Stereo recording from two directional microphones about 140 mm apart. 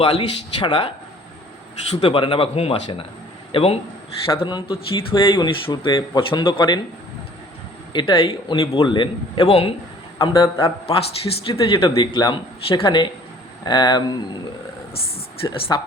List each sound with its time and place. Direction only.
0.2 s speech: 40° left (ahead or behind)
7.9 s speech: 35° left (ahead or behind)
10.2 s speech: 25° left (ahead or behind)
10.6 s speech: 40° left (ahead or behind)
14.9 s a woman's voice: 40° left (ahead or behind)